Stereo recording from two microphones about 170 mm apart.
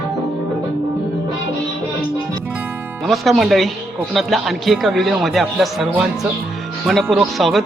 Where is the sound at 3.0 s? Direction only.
Centre (ahead or behind).